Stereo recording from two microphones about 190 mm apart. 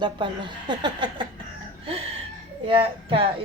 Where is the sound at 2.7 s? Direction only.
30° right (ahead or behind).